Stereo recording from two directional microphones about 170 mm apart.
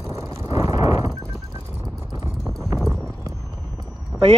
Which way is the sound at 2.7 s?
Centre (ahead or behind).